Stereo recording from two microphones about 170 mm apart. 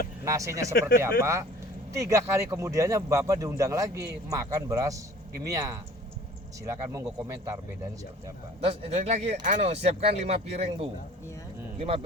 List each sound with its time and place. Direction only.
0.3 s a man's voice: 20° right (ahead or behind)
0.8 s speech: 70° left (ahead or behind)
1.2 s a man's voice: 15° right (ahead or behind)
8.7 s speech: 40° right (ahead or behind)